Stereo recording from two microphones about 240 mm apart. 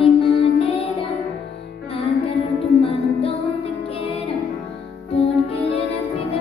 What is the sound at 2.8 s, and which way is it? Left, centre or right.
Music, left.